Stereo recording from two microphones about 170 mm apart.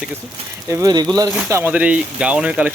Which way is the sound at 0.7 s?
20° right (ahead or behind).